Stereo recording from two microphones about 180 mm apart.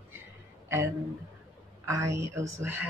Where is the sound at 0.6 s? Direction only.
15° right (ahead or behind).